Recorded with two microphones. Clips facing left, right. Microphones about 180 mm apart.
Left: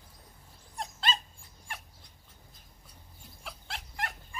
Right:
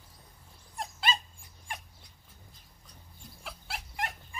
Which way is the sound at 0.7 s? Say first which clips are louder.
Right 1 dB; 5° right (ahead or behind).